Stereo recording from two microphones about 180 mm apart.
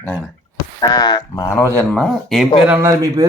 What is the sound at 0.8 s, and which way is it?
Speech, 20° left (ahead or behind).